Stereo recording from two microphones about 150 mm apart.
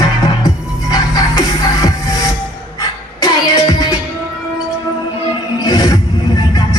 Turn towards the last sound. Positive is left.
turn(degrees=25)  # may be behind; listen again after turning